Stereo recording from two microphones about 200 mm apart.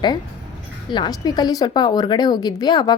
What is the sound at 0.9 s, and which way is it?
A woman's voice, 20° left (ahead or behind).